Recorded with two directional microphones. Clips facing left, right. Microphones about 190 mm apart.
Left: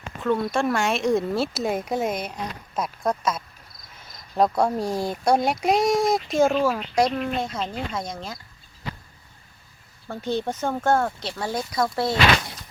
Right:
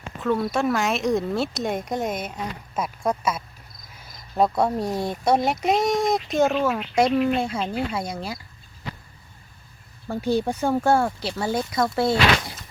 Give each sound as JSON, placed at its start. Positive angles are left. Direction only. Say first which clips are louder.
{"t": 0.2, "sound": "speech", "louder": "even", "side_deg": -5}
{"t": 10.1, "sound": "speech", "louder": "right 4 dB", "side_deg": -10}